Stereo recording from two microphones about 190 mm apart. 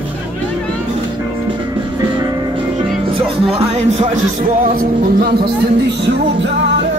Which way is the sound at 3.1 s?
30° right (ahead or behind).